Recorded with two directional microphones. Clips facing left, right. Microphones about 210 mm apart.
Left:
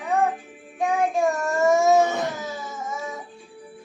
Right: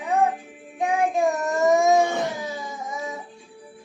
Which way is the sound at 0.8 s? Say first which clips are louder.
Even; 15° right (ahead or behind).